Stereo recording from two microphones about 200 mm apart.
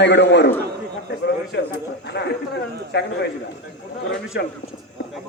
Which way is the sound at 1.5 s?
60° left (ahead or behind).